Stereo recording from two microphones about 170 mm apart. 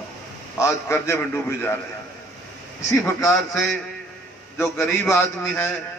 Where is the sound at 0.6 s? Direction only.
15° left (ahead or behind).